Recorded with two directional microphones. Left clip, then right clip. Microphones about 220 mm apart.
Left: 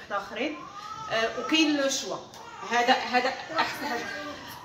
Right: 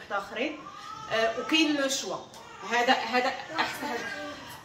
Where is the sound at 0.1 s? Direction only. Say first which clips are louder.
Even; 5° right (ahead or behind).